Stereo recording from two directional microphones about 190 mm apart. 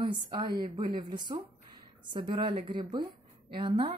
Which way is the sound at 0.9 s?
20° right (ahead or behind).